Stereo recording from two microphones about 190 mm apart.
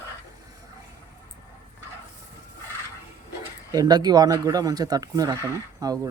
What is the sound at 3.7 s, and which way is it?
Speech, 20° right (ahead or behind).